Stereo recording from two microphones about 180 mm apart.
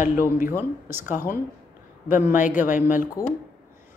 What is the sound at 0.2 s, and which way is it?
Speech, 50° left (ahead or behind).